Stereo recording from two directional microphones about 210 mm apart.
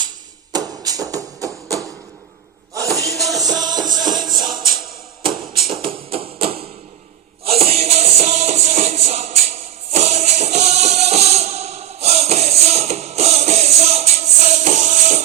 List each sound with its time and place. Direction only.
0.5 s music: 15° right (ahead or behind)
3.0 s music: 15° right (ahead or behind)
3.2 s music: centre (ahead or behind)
3.5 s music: 20° right (ahead or behind)
4.3 s music: centre (ahead or behind)
5.7 s hammer: 25° right (ahead or behind)
7.4 s music: 30° right (ahead or behind)